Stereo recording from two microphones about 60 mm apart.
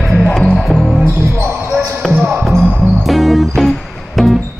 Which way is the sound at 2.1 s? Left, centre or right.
Right.